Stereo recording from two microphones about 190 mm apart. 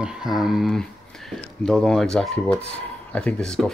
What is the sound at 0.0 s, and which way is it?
Speech, 5° right (ahead or behind).